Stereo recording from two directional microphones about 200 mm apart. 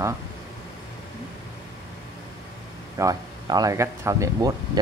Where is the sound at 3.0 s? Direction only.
20° right (ahead or behind).